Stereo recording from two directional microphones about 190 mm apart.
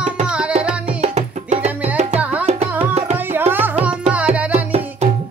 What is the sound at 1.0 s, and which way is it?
Music, 35° right (ahead or behind).